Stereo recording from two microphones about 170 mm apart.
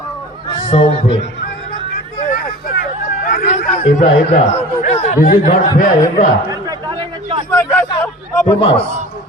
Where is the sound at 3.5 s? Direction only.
40° left (ahead or behind).